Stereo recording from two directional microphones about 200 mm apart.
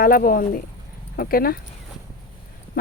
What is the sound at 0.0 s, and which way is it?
A woman's voice, 45° left (ahead or behind).